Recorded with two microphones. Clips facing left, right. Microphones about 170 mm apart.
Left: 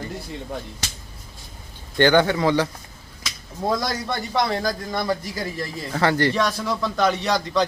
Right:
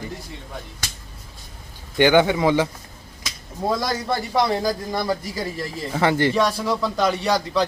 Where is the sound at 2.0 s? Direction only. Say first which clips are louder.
Right 1 dB; 15° right (ahead or behind).